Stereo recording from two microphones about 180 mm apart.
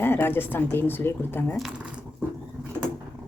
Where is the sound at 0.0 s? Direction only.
10° left (ahead or behind).